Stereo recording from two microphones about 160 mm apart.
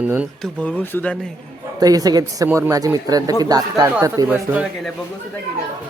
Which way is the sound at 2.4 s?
10° right (ahead or behind).